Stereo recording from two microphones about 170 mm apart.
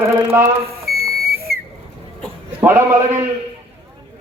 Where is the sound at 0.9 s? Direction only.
65° right (ahead or behind).